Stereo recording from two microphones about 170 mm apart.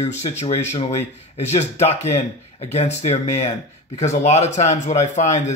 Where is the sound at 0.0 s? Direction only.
40° left (ahead or behind).